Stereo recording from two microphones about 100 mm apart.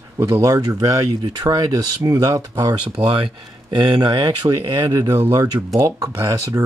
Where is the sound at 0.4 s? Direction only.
40° right (ahead or behind).